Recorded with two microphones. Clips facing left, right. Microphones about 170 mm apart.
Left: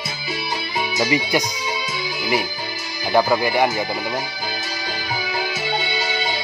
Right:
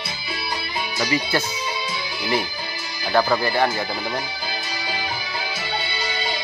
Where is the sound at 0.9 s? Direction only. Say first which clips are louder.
Left 3 dB; 15° left (ahead or behind).